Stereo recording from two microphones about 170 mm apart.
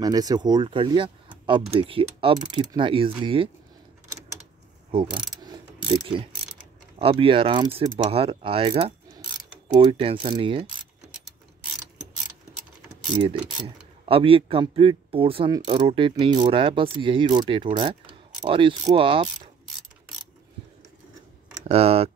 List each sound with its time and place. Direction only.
0.0 s speech: 20° right (ahead or behind)
5.9 s speech: 30° right (ahead or behind)
13.1 s speech: 25° right (ahead or behind)
21.6 s speech: 35° right (ahead or behind)